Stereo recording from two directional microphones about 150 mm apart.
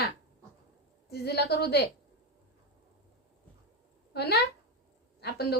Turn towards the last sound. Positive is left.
turn(degrees=90)